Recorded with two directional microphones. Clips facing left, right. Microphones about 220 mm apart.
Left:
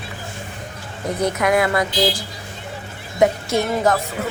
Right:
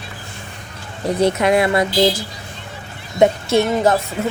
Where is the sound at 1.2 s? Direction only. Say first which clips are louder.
Right 3 dB; 25° right (ahead or behind).